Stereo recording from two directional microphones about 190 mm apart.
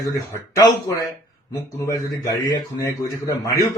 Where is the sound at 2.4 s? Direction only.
20° left (ahead or behind).